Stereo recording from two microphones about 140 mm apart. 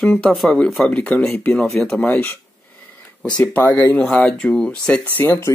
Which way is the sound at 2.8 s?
10° left (ahead or behind).